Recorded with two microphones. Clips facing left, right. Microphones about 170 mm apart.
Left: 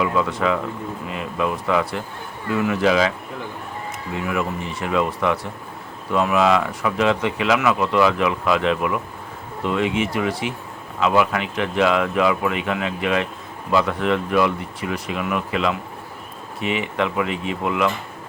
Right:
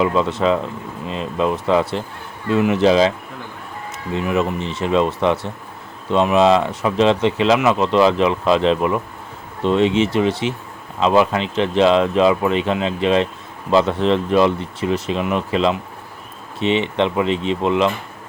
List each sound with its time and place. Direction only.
0.0 s speech: 25° right (ahead or behind)
4.1 s speech: 25° right (ahead or behind)